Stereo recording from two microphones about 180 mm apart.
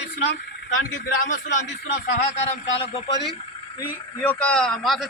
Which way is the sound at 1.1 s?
45° left (ahead or behind).